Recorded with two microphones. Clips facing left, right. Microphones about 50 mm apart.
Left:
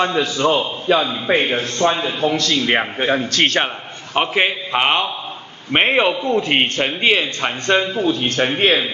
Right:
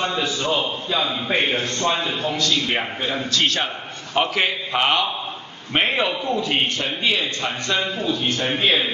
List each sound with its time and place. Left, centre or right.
0.0 s a man's voice: left
2.3 s a man's voice: left
3.0 s a man's voice: left
4.1 s a man's voice: left